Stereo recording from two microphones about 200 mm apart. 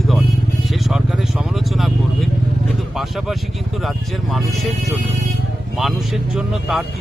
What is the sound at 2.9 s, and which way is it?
Speech, centre (ahead or behind).